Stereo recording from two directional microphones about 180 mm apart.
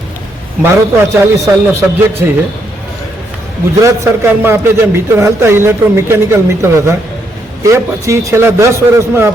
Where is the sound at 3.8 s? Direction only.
15° right (ahead or behind).